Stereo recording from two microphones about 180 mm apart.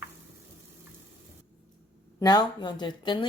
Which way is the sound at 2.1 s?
20° left (ahead or behind).